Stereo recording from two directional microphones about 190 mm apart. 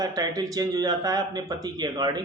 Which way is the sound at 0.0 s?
20° right (ahead or behind).